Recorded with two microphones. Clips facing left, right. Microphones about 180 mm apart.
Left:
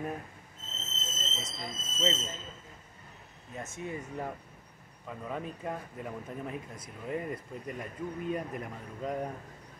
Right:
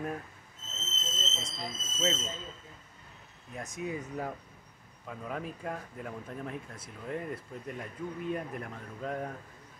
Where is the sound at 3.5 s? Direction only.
Centre (ahead or behind).